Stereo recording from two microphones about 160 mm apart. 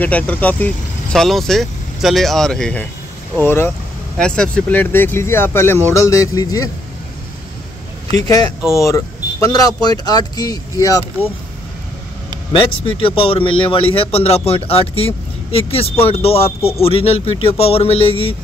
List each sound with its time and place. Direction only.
0.0 s speech: 10° left (ahead or behind)
8.2 s speech: 25° left (ahead or behind)
12.5 s speech: 35° left (ahead or behind)